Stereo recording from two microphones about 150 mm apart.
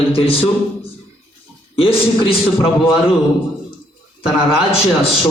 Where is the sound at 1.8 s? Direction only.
40° left (ahead or behind).